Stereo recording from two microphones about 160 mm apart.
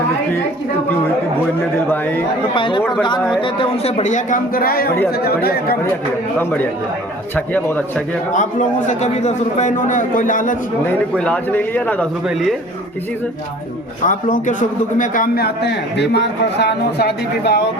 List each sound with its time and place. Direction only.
1.9 s a man's voice: 15° left (ahead or behind)
2.6 s a man's voice: 30° left (ahead or behind); by 5.7 s 70° left (ahead or behind)
7.3 s a man's voice: 10° left (ahead or behind)
8.3 s a man's voice: 55° left (ahead or behind)
10.8 s a man's voice: 5° left (ahead or behind)
12.3 s a man's voice: centre (ahead or behind)
14.0 s a man's voice: 55° left (ahead or behind); by 17.7 s 90° left